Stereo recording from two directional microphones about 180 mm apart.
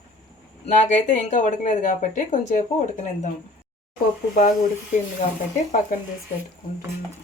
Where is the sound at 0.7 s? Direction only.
45° left (ahead or behind).